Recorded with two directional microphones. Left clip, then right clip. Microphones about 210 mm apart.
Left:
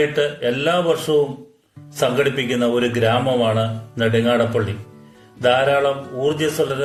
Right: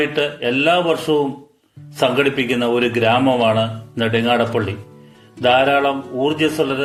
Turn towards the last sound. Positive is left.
turn(degrees=-15)  # may be behind; listen again after turning